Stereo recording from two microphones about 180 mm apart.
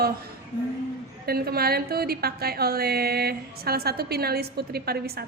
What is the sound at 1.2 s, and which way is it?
A woman's voice, 60° right (ahead or behind).